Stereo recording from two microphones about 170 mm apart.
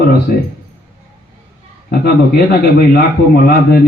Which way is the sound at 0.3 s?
55° left (ahead or behind).